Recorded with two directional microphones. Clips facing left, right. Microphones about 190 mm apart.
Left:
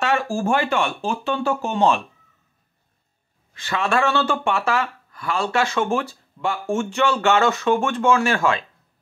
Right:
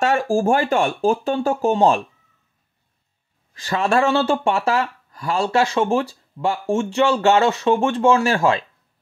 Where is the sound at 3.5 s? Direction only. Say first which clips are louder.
Right 3 dB; 40° right (ahead or behind).